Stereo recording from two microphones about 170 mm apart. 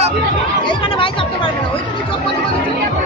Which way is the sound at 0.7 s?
30° left (ahead or behind).